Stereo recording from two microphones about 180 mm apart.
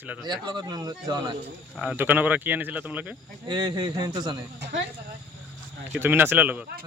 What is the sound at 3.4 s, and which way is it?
Speech, 25° right (ahead or behind).